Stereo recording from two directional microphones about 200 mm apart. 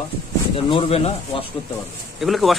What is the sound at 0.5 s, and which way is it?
Speech, 30° left (ahead or behind).